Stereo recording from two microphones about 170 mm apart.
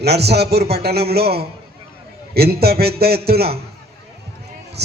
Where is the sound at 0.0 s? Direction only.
75° right (ahead or behind).